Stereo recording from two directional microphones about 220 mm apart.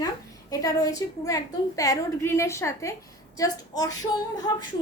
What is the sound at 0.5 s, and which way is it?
A woman's voice, 15° left (ahead or behind).